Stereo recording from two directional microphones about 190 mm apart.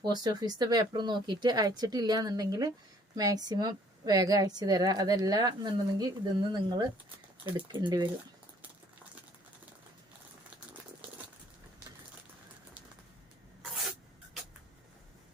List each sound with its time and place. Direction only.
0.0 s a woman's voice: 20° right (ahead or behind)